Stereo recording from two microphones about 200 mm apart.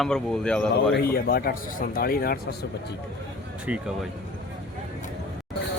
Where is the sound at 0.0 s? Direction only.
5° left (ahead or behind).